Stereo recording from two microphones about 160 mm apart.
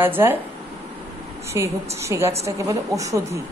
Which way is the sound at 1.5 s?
20° right (ahead or behind).